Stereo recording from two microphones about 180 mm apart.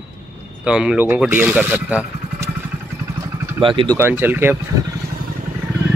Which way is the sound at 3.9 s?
15° right (ahead or behind).